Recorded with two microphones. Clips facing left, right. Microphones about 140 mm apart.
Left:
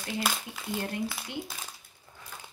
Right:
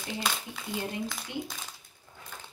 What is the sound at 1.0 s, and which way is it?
Speech, 5° left (ahead or behind).